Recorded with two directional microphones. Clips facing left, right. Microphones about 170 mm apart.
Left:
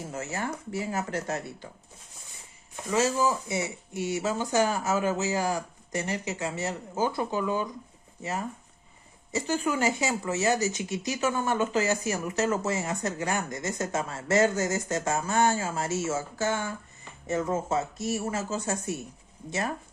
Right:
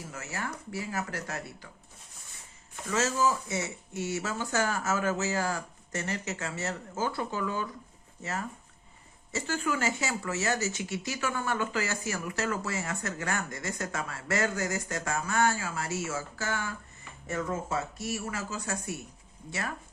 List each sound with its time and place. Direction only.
0.1 s speech: 25° left (ahead or behind)
2.8 s speech: 15° left (ahead or behind)